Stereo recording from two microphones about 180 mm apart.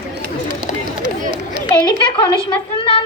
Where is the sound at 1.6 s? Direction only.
20° left (ahead or behind).